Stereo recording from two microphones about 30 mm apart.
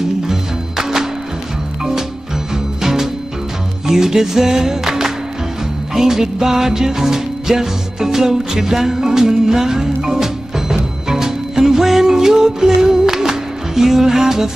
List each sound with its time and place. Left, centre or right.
0.3 s music: centre
2.5 s music: centre